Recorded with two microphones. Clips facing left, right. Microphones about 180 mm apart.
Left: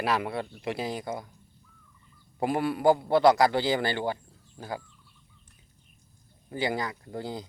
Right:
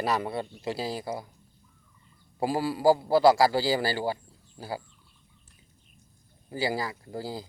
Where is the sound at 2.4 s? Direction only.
30° right (ahead or behind).